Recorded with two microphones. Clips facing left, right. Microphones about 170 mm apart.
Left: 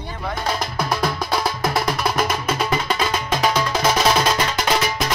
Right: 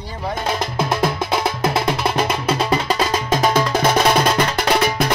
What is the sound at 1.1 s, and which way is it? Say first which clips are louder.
Music: right 2 dB; 25° right (ahead or behind).